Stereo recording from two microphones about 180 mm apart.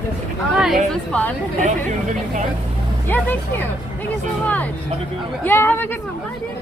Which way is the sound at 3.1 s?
10° left (ahead or behind).